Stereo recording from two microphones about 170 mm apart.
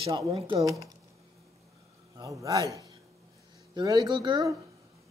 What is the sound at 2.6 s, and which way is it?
Speech, 20° left (ahead or behind).